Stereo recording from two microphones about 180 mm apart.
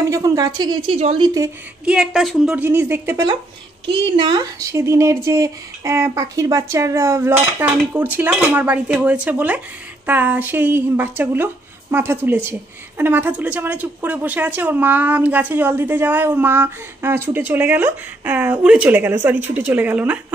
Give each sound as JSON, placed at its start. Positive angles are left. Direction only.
{"t": 0.0, "sound": "a woman's voice", "side_deg": -20}
{"t": 0.9, "sound": "a woman's voice", "side_deg": -35}
{"t": 1.2, "sound": "a woman's voice", "side_deg": -20}
{"t": 1.9, "sound": "speech", "side_deg": -5}